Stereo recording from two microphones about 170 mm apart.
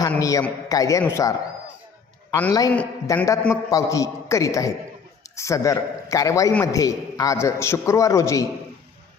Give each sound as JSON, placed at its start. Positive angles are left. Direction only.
{"t": 0.2, "sound": "a man's voice", "side_deg": 20}
{"t": 2.5, "sound": "a man's voice", "side_deg": 20}